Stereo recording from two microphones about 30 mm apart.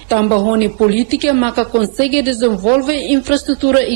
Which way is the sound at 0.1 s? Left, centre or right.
Left.